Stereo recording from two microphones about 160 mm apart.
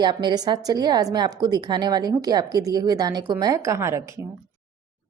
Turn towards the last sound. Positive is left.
turn(degrees=-20)  # may be behind; listen again after turning